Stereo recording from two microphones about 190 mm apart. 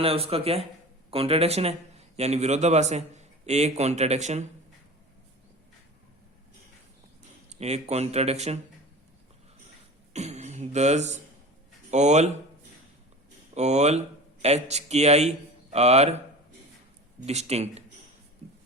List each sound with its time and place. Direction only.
0.0 s speech: 30° right (ahead or behind)
7.6 s speech: 35° right (ahead or behind)
10.1 s a sound: 35° right (ahead or behind)
11.9 s speech: 40° right (ahead or behind)
13.5 s speech: 35° right (ahead or behind)